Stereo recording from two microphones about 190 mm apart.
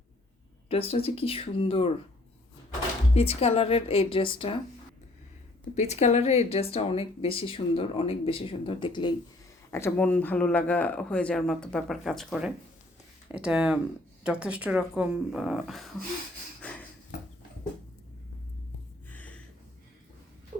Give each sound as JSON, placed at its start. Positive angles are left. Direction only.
{"t": 0.7, "sound": "speech", "side_deg": 30}
{"t": 3.2, "sound": "speech", "side_deg": 30}
{"t": 5.7, "sound": "speech", "side_deg": 35}
{"t": 9.7, "sound": "speech", "side_deg": 10}
{"t": 16.6, "sound": "a sound", "side_deg": 5}
{"t": 19.1, "sound": "a sound", "side_deg": 10}